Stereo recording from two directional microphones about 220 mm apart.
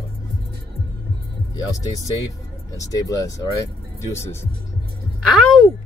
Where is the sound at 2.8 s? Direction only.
15° left (ahead or behind).